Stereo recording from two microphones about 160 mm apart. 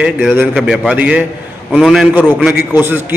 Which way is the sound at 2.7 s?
15° right (ahead or behind).